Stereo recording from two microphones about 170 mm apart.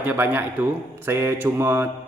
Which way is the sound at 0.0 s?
10° right (ahead or behind).